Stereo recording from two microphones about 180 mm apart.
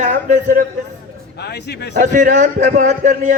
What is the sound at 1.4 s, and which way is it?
Speech, 65° left (ahead or behind).